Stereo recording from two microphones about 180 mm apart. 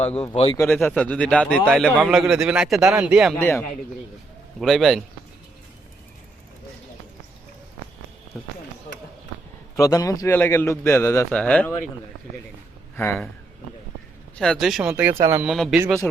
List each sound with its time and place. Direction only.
0.0 s a man's voice: 35° left (ahead or behind)
0.7 s speech: 5° left (ahead or behind)
3.3 s a man's voice: 15° left (ahead or behind)
4.6 s speech: centre (ahead or behind)
9.7 s a man's voice: 20° left (ahead or behind)
13.0 s a man's voice: 10° left (ahead or behind)
14.3 s speech: 5° left (ahead or behind); by 15.5 s 10° right (ahead or behind)
15.5 s speech: centre (ahead or behind)